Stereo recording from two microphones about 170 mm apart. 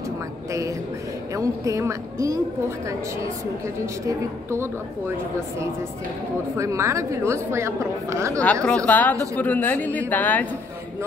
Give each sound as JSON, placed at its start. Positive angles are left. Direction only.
{"t": 0.5, "sound": "a woman's voice", "side_deg": -20}
{"t": 4.5, "sound": "a woman's voice", "side_deg": -15}
{"t": 6.5, "sound": "a woman's voice", "side_deg": -15}
{"t": 8.6, "sound": "a woman's voice", "side_deg": 5}